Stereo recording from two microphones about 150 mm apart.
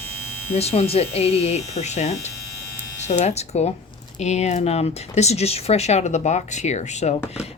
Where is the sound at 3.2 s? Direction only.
45° left (ahead or behind).